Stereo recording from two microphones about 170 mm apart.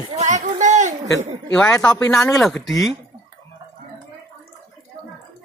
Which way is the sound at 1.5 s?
5° left (ahead or behind).